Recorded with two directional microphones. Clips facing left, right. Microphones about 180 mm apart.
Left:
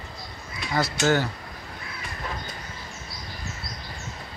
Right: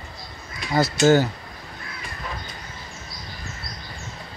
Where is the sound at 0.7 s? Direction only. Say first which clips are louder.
Right 6 dB; 30° right (ahead or behind).